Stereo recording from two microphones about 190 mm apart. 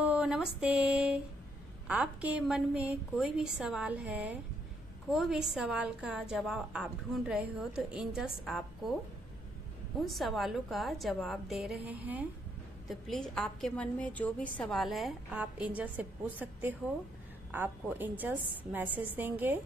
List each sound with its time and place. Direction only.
0.0 s a woman's voice: 5° right (ahead or behind)
9.9 s a woman's voice: centre (ahead or behind)
12.8 s a woman's voice: centre (ahead or behind)